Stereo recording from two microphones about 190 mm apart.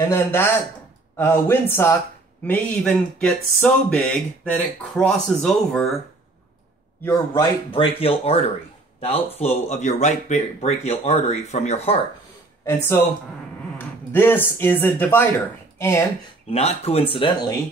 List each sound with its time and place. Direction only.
0.1 s speech: 15° left (ahead or behind)
7.0 s speech: 15° left (ahead or behind)
7.7 s speech: 30° left (ahead or behind)
12.6 s speech: 10° left (ahead or behind)
16.4 s speech: 35° left (ahead or behind)